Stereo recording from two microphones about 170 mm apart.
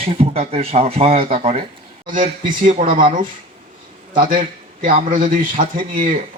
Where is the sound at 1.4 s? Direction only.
35° right (ahead or behind).